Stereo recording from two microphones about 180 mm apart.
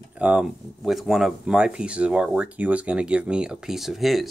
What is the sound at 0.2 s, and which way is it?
Speech, 5° right (ahead or behind).